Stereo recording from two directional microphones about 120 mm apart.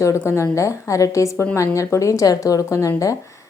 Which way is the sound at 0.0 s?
25° left (ahead or behind).